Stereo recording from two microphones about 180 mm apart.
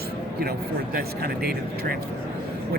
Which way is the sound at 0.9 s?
60° right (ahead or behind).